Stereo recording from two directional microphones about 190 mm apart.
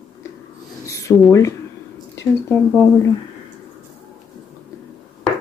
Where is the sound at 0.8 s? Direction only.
15° left (ahead or behind).